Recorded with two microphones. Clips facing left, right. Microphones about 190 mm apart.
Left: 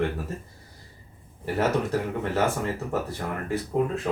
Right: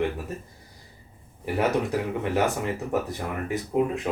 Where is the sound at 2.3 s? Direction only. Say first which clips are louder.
Even; 15° right (ahead or behind).